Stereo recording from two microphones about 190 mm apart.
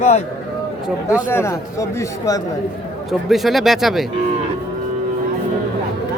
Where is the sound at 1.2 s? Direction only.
15° left (ahead or behind).